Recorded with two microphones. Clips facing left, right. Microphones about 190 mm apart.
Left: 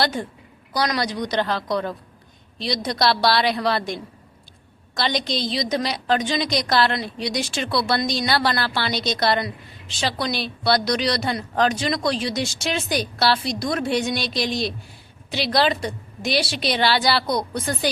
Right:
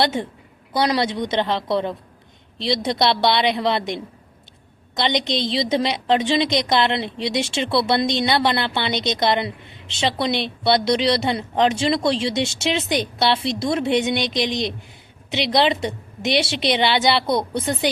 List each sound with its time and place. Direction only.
0.0 s a woman's voice: 25° right (ahead or behind)